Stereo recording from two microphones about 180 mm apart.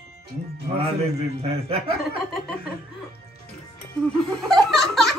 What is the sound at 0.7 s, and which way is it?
A man's voice, 35° right (ahead or behind).